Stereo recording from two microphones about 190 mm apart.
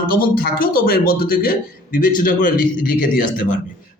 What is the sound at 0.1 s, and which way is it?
A man's voice, 50° left (ahead or behind).